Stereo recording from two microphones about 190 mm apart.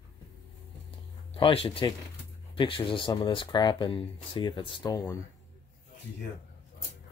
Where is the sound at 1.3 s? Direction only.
30° left (ahead or behind).